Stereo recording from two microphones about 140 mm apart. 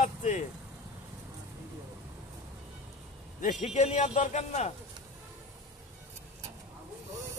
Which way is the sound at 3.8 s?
50° left (ahead or behind).